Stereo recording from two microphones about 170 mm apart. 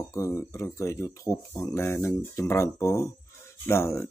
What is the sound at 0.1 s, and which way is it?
Speech, 20° left (ahead or behind).